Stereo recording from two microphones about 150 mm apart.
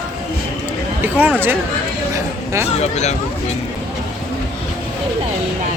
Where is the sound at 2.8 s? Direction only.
45° left (ahead or behind).